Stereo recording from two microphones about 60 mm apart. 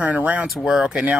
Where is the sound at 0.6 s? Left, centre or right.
Centre.